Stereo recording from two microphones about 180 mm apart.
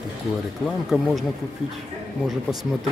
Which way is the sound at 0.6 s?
Centre (ahead or behind).